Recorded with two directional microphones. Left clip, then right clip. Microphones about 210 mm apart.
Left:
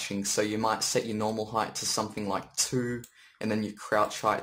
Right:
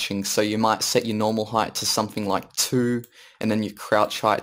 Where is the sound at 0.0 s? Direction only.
40° right (ahead or behind).